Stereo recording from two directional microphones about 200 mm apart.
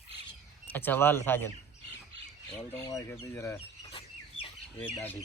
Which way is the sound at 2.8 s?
15° left (ahead or behind).